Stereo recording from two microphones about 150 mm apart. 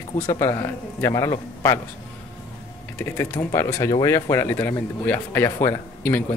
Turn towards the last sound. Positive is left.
turn(degrees=15)  # may be behind; listen again after turning